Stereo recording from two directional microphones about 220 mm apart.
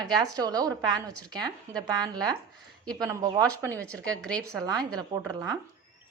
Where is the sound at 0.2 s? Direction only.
15° right (ahead or behind).